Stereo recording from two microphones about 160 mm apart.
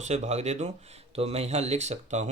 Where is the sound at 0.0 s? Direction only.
45° right (ahead or behind).